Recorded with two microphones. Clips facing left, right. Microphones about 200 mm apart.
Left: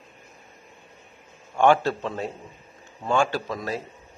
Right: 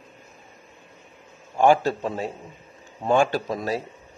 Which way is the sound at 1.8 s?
10° right (ahead or behind).